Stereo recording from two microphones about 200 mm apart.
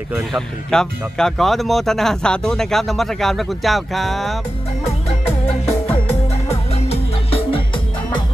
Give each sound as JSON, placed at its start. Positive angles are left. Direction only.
{"t": 0.3, "sound": "speech", "side_deg": 5}
{"t": 6.5, "sound": "music", "side_deg": 30}